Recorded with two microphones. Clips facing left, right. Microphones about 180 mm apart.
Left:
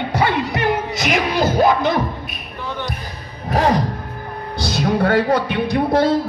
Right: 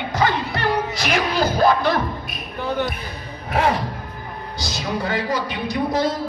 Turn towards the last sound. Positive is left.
turn(degrees=60)  # may be behind; listen again after turning